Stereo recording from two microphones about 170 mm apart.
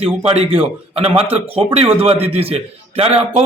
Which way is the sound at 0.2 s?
35° right (ahead or behind).